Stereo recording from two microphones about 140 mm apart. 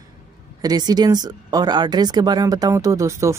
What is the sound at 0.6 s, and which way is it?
Speech, 30° right (ahead or behind).